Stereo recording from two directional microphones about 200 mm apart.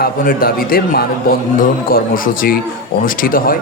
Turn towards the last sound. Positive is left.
turn(degrees=45)  # may be behind; listen again after turning